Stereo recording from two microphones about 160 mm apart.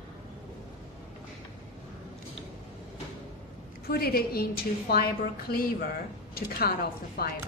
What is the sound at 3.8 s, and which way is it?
A woman's voice, 70° left (ahead or behind).